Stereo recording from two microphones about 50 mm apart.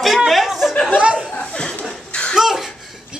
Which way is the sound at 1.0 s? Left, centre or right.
Right.